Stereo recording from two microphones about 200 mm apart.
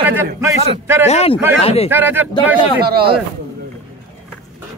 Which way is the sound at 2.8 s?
50° right (ahead or behind).